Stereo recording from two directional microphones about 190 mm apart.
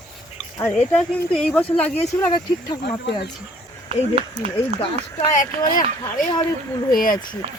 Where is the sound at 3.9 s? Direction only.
35° right (ahead or behind).